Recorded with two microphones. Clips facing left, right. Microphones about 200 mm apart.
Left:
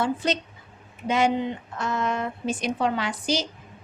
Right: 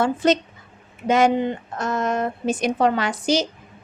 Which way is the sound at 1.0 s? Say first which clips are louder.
Right 5 dB; 45° right (ahead or behind).